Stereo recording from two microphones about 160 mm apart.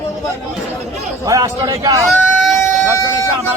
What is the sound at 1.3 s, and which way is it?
Speech, 20° right (ahead or behind).